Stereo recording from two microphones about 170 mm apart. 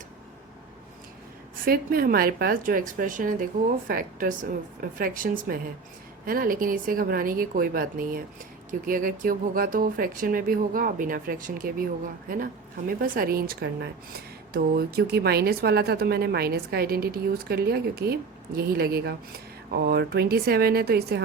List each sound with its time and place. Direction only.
1.6 s a woman's voice: 60° right (ahead or behind)